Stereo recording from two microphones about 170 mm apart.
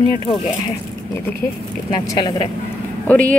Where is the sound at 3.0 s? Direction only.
10° left (ahead or behind).